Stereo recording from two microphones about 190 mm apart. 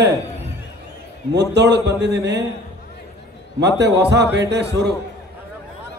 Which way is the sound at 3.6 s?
65° right (ahead or behind).